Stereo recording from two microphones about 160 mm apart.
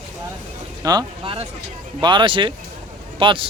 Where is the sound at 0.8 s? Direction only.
25° right (ahead or behind).